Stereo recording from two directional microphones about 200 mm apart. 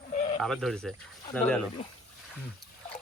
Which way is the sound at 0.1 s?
35° left (ahead or behind).